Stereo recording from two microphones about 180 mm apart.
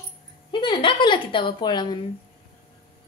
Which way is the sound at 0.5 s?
25° left (ahead or behind).